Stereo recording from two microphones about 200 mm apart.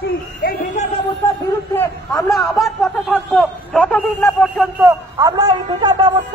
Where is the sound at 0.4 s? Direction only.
45° left (ahead or behind).